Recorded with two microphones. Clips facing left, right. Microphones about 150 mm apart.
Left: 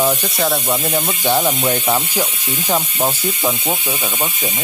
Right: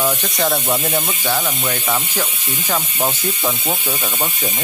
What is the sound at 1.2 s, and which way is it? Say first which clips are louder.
Speech: left 7 dB; 30° left (ahead or behind).